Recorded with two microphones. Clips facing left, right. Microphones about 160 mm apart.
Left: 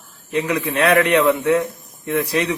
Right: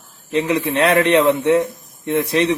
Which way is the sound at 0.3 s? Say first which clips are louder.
Right 2 dB; 25° right (ahead or behind).